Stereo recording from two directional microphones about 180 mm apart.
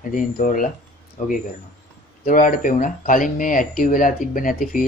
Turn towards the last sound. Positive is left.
turn(degrees=50)  # may be behind; listen again after turning